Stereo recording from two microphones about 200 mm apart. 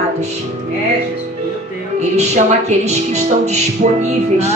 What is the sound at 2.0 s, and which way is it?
A woman's voice, 35° right (ahead or behind).